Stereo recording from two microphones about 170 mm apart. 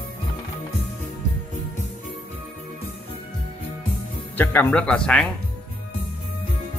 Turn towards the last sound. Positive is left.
turn(degrees=5)  # may be behind; listen again after turning